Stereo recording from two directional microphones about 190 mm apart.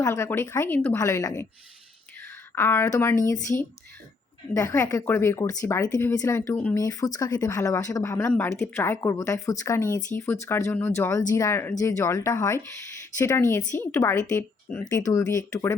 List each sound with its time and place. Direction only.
0.0 s a woman's voice: 15° left (ahead or behind)